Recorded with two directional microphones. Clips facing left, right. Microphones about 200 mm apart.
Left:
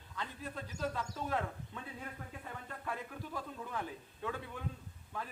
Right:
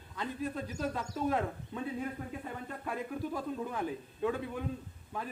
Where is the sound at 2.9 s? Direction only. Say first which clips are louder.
Right 7 dB; 15° right (ahead or behind).